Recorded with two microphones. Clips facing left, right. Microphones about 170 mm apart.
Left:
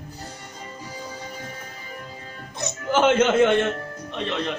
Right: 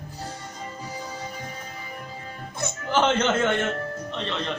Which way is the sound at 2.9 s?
10° left (ahead or behind).